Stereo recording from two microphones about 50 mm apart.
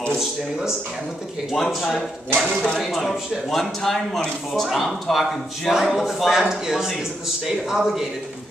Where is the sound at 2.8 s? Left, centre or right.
Centre.